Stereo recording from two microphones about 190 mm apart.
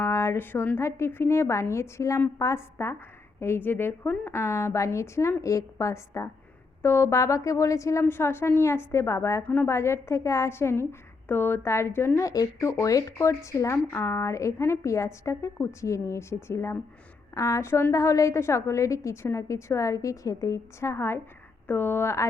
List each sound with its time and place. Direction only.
0.0 s speech: 15° left (ahead or behind)